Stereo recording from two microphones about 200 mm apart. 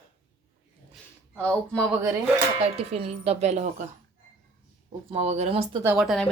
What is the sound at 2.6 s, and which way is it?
Speech, 30° right (ahead or behind).